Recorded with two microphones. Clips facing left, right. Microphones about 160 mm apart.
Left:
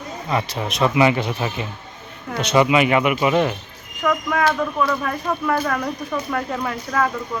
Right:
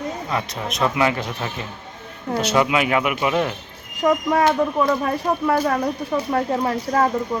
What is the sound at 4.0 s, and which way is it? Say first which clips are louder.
Speech: right 3 dB; 35° right (ahead or behind).